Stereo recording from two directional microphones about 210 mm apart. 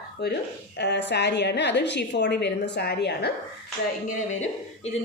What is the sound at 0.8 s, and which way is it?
A woman's voice, 55° left (ahead or behind).